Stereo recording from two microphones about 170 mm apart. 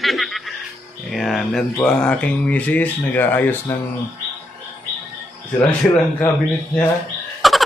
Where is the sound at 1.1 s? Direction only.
Centre (ahead or behind).